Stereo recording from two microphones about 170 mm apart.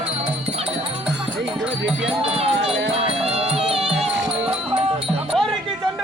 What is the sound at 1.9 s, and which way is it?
Music, centre (ahead or behind).